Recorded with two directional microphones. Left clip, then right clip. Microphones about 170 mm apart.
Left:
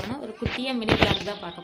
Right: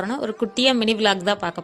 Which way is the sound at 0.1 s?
45° right (ahead or behind).